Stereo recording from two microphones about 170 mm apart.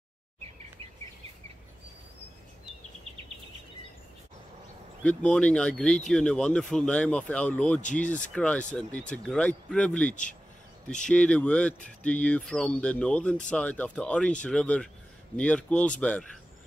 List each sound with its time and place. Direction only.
5.0 s speech: 5° left (ahead or behind)
7.8 s speech: 45° left (ahead or behind)
8.1 s speech: 5° left (ahead or behind)